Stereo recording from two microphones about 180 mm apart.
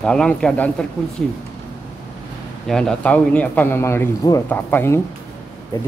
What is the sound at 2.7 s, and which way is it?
A man's voice, 5° left (ahead or behind).